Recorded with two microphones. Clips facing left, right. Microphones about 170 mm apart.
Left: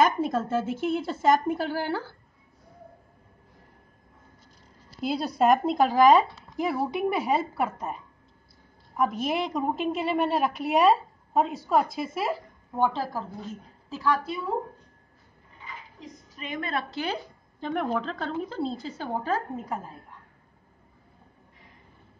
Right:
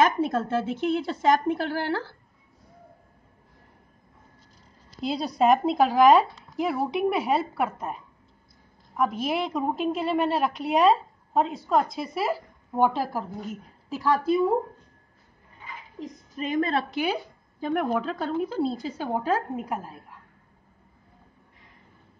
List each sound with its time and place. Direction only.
0.0 s a woman's voice: centre (ahead or behind)
5.0 s a woman's voice: 5° left (ahead or behind)
12.7 s a woman's voice: 15° right (ahead or behind)
16.3 s a woman's voice: 40° right (ahead or behind)
16.9 s a woman's voice: 10° right (ahead or behind)